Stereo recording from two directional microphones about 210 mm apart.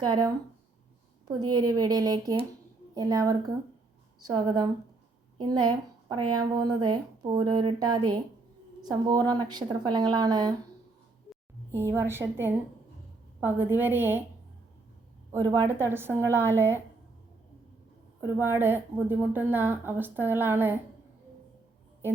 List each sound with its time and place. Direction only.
0.0 s a woman's voice: 20° right (ahead or behind)
1.5 s a woman's voice: 20° right (ahead or behind)
6.1 s speech: 90° right
6.4 s a woman's voice: 20° right (ahead or behind)
11.7 s a woman's voice: 10° right (ahead or behind)
15.4 s a woman's voice: 15° right (ahead or behind)
18.2 s a woman's voice: 10° right (ahead or behind)